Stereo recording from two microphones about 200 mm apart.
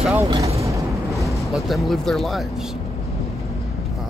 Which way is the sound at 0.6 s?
15° right (ahead or behind).